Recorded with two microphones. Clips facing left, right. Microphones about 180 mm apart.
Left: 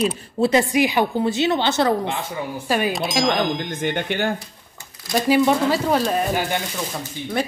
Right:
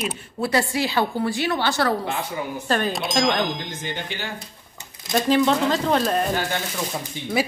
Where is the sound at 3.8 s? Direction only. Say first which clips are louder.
Left 8 dB; 55° left (ahead or behind).